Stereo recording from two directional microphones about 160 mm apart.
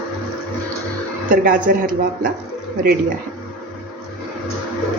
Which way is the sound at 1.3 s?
60° right (ahead or behind).